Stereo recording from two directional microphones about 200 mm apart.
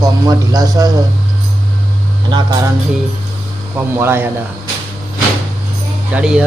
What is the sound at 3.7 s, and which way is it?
Speech, 10° right (ahead or behind).